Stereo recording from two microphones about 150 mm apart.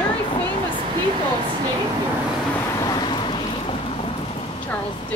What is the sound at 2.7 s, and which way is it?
Vehicle, 25° left (ahead or behind).